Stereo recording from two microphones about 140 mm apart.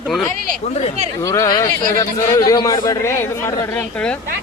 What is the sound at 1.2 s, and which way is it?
A man's voice, 25° left (ahead or behind).